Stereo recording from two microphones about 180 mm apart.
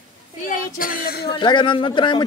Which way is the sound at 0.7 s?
50° left (ahead or behind).